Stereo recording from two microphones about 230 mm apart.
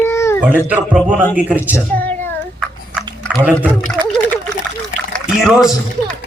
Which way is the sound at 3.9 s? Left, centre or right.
Centre.